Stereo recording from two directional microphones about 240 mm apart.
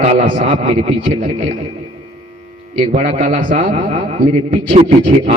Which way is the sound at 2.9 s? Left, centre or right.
Right.